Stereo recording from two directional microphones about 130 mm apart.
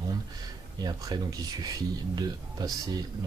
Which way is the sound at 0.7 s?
30° right (ahead or behind).